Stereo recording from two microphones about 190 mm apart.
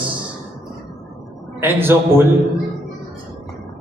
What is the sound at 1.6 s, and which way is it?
Speech, 10° right (ahead or behind).